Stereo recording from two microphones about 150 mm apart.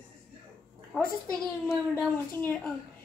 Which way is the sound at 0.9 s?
Centre (ahead or behind).